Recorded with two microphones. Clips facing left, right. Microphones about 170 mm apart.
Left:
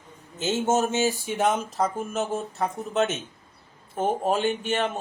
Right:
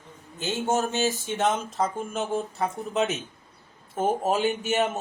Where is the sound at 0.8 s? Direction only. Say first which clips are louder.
Left 2 dB; 15° left (ahead or behind).